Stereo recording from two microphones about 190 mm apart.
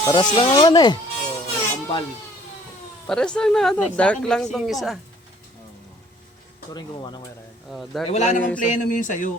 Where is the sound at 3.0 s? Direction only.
5° left (ahead or behind).